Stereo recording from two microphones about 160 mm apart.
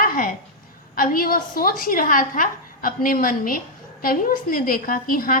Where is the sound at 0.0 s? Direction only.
65° left (ahead or behind).